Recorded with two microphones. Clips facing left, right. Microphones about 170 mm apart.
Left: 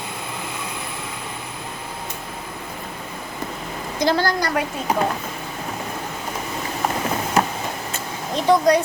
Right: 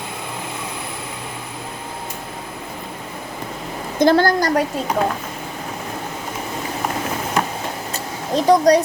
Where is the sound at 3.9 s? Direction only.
50° right (ahead or behind).